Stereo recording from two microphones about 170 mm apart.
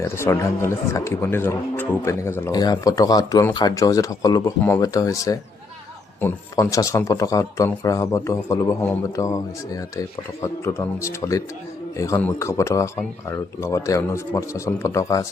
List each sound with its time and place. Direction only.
0.0 s speech: 15° left (ahead or behind)